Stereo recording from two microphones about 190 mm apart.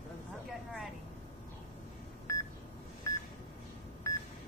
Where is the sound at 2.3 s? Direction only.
15° left (ahead or behind).